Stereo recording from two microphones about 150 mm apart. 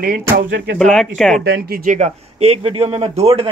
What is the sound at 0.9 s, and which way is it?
Speech, 5° left (ahead or behind).